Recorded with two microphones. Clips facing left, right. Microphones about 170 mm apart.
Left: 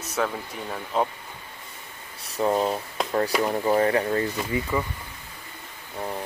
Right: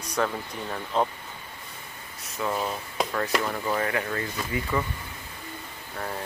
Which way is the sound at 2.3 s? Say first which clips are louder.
Left 6 dB; 35° left (ahead or behind).